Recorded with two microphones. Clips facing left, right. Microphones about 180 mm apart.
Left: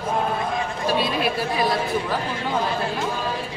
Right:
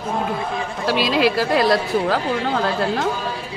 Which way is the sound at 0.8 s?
90° right.